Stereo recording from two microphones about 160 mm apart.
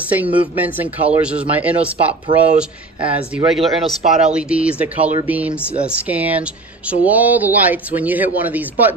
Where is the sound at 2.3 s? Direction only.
30° right (ahead or behind).